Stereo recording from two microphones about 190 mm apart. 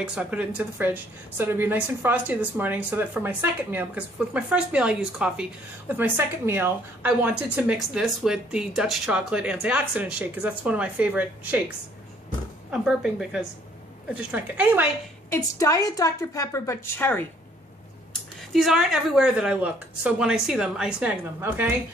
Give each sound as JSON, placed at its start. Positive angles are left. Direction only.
{"t": 0.0, "sound": "a woman's voice", "side_deg": -5}
{"t": 12.8, "sound": "a woman's voice", "side_deg": -5}
{"t": 15.3, "sound": "a woman's voice", "side_deg": 15}
{"t": 18.5, "sound": "a woman's voice", "side_deg": 0}